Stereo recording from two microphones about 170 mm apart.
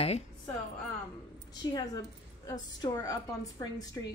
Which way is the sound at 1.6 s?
25° left (ahead or behind).